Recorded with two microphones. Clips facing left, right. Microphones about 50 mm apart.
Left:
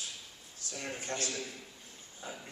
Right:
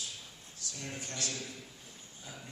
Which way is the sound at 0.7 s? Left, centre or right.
Left.